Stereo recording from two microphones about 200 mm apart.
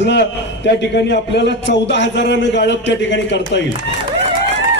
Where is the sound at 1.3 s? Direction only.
60° left (ahead or behind).